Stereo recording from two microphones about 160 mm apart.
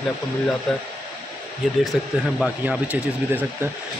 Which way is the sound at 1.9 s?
Centre (ahead or behind).